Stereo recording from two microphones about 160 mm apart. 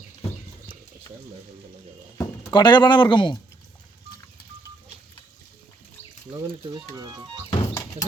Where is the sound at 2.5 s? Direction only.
30° left (ahead or behind).